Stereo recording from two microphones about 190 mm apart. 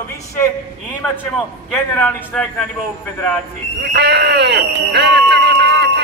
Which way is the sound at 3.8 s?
60° right (ahead or behind).